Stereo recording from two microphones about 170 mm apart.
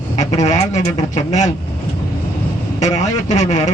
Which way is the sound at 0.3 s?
45° left (ahead or behind).